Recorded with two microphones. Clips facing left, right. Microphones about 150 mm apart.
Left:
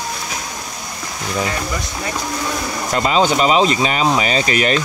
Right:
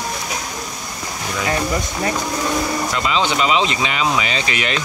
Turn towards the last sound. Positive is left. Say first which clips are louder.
# left 5 dB
turn(degrees=40)  # may be behind; listen again after turning